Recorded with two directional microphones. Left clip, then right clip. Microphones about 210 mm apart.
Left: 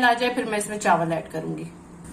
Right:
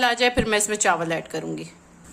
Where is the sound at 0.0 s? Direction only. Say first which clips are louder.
Right 1 dB; 55° right (ahead or behind).